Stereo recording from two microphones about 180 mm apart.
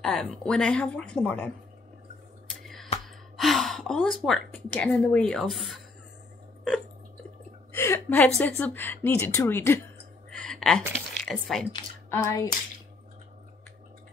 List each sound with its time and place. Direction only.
0.0 s speech: centre (ahead or behind)
2.6 s a sound: centre (ahead or behind)
3.3 s a woman's voice: centre (ahead or behind)
7.7 s a woman's voice: 15° left (ahead or behind)
10.3 s a sound: 5° left (ahead or behind)
11.2 s speech: centre (ahead or behind)
12.1 s a woman's voice: 15° left (ahead or behind)